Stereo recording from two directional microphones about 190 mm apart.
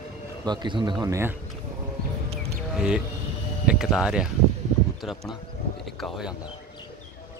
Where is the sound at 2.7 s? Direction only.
5° right (ahead or behind).